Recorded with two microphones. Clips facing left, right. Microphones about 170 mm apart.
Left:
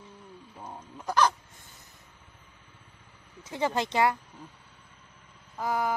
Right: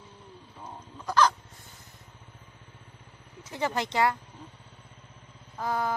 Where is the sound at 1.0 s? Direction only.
15° left (ahead or behind).